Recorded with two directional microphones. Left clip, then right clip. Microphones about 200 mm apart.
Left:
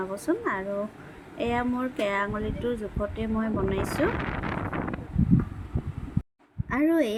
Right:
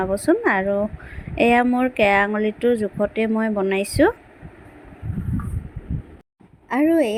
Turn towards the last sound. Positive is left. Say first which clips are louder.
# right 6 dB
turn(degrees=-15)  # may be behind; listen again after turning